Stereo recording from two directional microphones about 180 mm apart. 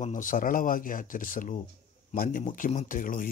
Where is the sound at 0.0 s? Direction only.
45° left (ahead or behind).